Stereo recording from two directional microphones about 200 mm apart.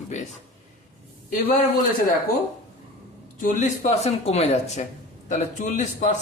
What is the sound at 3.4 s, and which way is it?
Speech, 40° left (ahead or behind).